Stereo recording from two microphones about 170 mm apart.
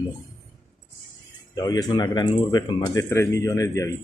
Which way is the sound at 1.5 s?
25° left (ahead or behind).